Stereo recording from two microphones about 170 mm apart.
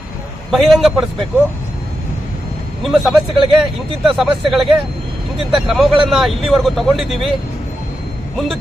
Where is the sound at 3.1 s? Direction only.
30° right (ahead or behind).